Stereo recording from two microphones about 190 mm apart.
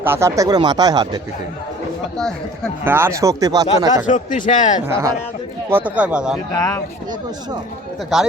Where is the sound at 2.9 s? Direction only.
10° right (ahead or behind).